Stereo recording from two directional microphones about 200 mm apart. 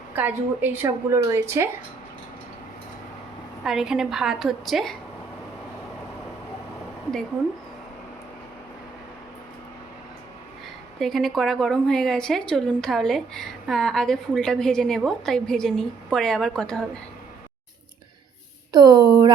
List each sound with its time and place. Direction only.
0.2 s a woman's voice: 10° right (ahead or behind)
3.6 s a woman's voice: centre (ahead or behind)
11.0 s a woman's voice: centre (ahead or behind)
18.7 s speech: 20° right (ahead or behind)